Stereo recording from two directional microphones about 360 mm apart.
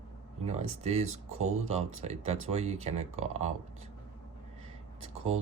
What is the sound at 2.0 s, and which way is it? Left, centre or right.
Speech, centre.